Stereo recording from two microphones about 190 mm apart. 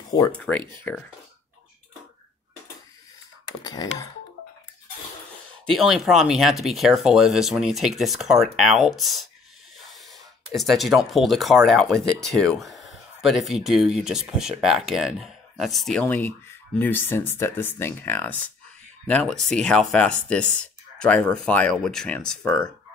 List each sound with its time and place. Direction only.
0.4 s speech: 5° left (ahead or behind)
3.6 s wail: 20° left (ahead or behind)
5.8 s speech: centre (ahead or behind)
10.5 s speech: centre (ahead or behind)